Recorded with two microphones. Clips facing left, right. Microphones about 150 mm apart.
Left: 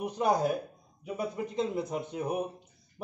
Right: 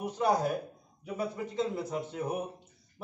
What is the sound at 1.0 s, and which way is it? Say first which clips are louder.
Speech: left 1 dB; 10° left (ahead or behind).